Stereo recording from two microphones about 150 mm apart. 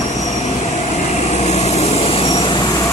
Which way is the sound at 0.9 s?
50° left (ahead or behind).